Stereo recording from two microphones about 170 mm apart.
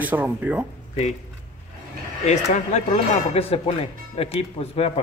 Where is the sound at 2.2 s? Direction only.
45° left (ahead or behind).